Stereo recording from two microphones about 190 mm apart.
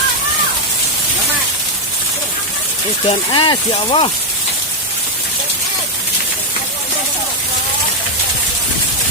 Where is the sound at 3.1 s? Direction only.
25° left (ahead or behind).